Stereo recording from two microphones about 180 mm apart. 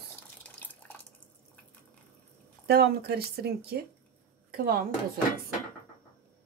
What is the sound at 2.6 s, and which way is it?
Speech, 60° right (ahead or behind).